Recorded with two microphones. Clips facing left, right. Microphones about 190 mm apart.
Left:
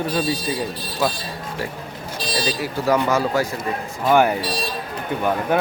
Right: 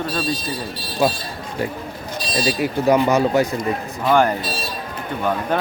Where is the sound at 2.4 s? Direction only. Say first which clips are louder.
Right 4 dB; 20° right (ahead or behind).